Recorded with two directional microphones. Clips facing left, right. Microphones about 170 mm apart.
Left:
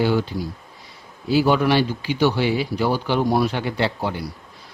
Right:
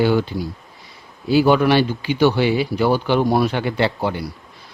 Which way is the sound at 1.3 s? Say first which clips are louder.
Right 3 dB; 65° right (ahead or behind).